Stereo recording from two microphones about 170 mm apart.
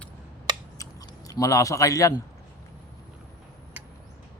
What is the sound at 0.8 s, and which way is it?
Scissors, 20° left (ahead or behind).